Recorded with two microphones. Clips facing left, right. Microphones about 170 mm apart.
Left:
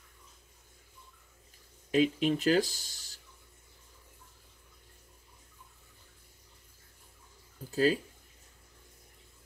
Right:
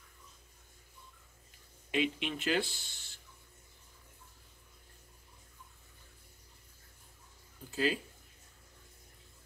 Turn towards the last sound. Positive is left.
turn(degrees=40)  # may be behind; listen again after turning